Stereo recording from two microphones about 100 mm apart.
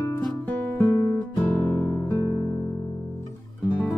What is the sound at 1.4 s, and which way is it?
Guitar, 20° left (ahead or behind).